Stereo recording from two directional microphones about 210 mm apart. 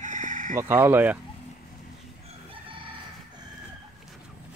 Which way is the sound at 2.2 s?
25° right (ahead or behind).